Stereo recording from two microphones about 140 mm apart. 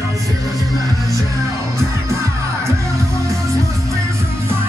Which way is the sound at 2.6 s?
20° right (ahead or behind).